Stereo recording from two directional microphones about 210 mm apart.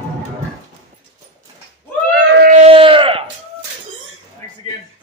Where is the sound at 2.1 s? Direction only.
65° right (ahead or behind).